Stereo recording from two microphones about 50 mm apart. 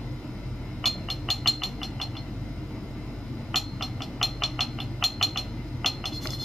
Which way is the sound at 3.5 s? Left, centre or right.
Centre.